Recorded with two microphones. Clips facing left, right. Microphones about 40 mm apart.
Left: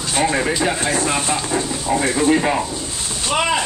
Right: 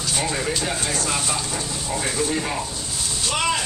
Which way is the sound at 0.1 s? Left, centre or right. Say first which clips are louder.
Left 7 dB; left.